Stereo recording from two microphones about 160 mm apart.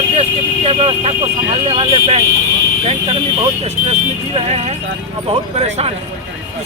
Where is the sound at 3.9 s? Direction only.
40° right (ahead or behind).